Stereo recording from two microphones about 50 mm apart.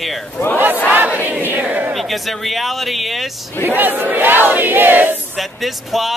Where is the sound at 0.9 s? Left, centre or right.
Right.